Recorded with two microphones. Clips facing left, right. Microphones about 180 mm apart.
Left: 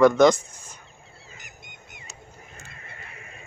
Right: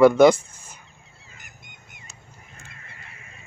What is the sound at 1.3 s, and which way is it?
Goose, 50° right (ahead or behind).